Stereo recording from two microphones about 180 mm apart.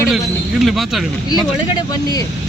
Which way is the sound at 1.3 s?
25° left (ahead or behind).